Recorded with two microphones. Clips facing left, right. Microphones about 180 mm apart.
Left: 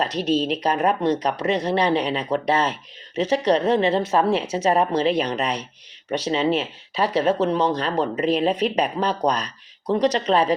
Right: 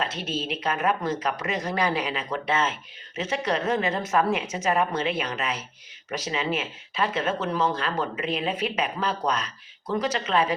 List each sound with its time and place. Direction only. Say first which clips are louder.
0.0 s speech: left 8 dB; 35° left (ahead or behind)